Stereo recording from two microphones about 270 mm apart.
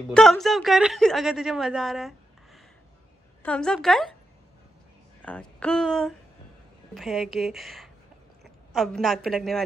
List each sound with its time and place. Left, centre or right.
0.1 s speech: centre
5.2 s speech: centre